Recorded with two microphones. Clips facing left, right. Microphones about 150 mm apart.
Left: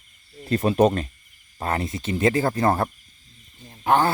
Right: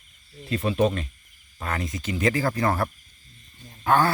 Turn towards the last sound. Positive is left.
turn(degrees=20)  # may be behind; listen again after turning